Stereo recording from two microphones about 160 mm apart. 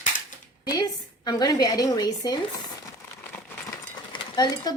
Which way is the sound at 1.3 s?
25° left (ahead or behind).